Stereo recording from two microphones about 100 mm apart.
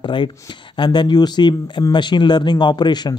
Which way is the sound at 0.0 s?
50° left (ahead or behind).